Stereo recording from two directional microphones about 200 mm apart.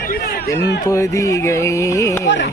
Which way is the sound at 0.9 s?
15° left (ahead or behind).